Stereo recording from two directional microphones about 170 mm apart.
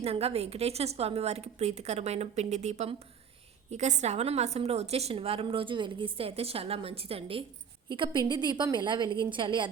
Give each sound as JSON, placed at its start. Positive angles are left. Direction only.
{"t": 0.0, "sound": "a woman's voice", "side_deg": -35}